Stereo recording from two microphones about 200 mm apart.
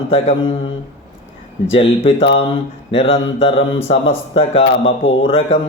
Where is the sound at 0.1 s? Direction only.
30° left (ahead or behind).